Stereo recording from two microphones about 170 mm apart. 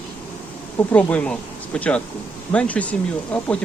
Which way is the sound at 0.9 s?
10° left (ahead or behind).